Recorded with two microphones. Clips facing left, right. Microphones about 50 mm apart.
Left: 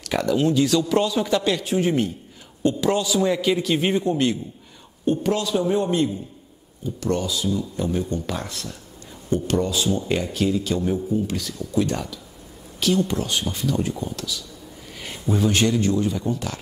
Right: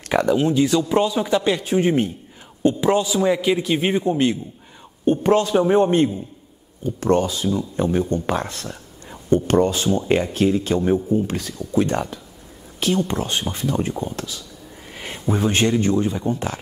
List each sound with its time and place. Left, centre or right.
0.0 s a man's voice: right
5.0 s a man's voice: right